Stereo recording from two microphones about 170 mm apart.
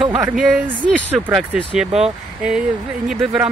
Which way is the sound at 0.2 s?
5° right (ahead or behind).